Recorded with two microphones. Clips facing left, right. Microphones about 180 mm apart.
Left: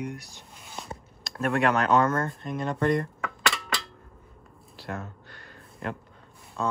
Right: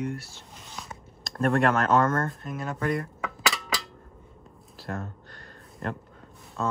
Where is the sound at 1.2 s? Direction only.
Centre (ahead or behind).